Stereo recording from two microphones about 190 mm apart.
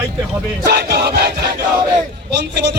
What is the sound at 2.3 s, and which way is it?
Speech, 65° right (ahead or behind).